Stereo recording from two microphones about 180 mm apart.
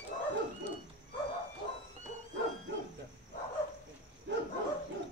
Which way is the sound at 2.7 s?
85° right.